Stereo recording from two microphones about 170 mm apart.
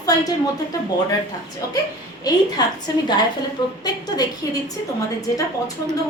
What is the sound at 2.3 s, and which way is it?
Speech, 25° left (ahead or behind).